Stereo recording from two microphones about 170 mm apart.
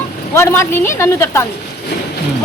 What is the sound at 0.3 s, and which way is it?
Speech, 15° left (ahead or behind).